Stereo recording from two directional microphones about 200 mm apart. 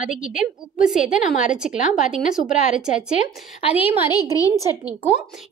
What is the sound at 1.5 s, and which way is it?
Speech, 5° right (ahead or behind).